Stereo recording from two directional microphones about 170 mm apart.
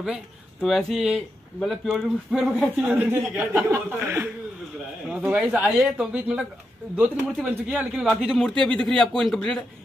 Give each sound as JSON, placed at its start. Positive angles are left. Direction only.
{"t": 0.0, "sound": "speech", "side_deg": 0}
{"t": 2.8, "sound": "speech", "side_deg": -10}